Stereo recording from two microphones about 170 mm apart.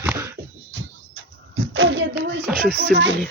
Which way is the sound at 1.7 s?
90° right.